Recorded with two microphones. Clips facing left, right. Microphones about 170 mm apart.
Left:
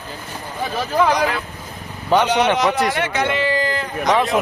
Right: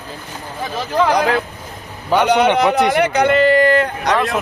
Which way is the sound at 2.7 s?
65° right (ahead or behind).